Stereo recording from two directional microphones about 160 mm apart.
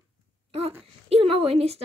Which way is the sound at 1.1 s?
35° right (ahead or behind).